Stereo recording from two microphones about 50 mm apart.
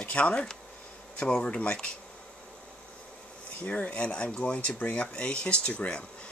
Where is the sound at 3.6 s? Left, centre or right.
Left.